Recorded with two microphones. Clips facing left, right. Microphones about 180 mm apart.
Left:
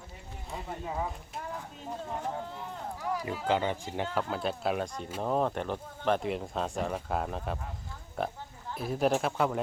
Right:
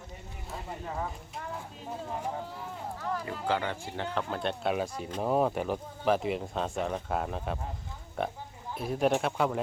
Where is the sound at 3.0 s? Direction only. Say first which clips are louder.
Left 1 dB; 10° left (ahead or behind).